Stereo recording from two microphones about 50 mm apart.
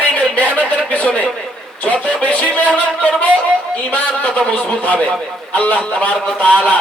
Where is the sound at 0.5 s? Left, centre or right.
Left.